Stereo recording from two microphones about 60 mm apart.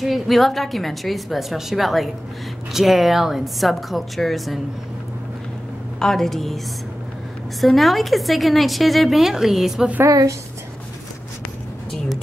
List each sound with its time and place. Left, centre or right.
0.0 s a woman's voice: centre
5.9 s a woman's voice: centre
7.6 s a woman's voice: centre
10.0 s a woman's voice: right